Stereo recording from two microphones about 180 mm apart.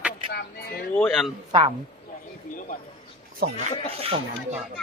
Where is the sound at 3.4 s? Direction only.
65° right (ahead or behind).